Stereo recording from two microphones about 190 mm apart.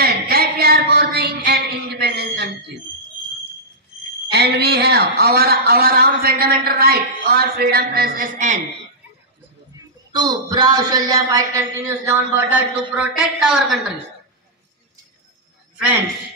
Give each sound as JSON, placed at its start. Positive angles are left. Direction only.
{"t": 0.0, "sound": "a sound", "side_deg": -55}
{"t": 4.3, "sound": "a man's voice", "side_deg": -60}
{"t": 9.8, "sound": "speech", "side_deg": -20}